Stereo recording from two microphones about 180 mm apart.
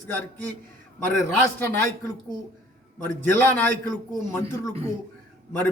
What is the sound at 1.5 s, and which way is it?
Speech, 15° left (ahead or behind).